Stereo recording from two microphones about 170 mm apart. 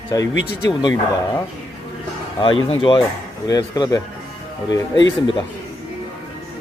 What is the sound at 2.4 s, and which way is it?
Speech, 30° left (ahead or behind).